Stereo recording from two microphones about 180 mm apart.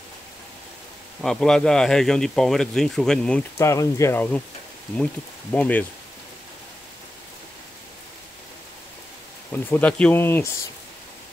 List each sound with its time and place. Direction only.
1.2 s speech: 5° left (ahead or behind)
3.5 s speech: 15° left (ahead or behind)
5.5 s speech: 10° left (ahead or behind)
9.5 s speech: 10° left (ahead or behind)